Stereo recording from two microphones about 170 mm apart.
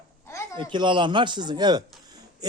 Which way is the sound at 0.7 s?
30° right (ahead or behind).